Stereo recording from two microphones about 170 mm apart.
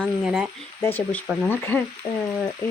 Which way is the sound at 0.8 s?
10° left (ahead or behind).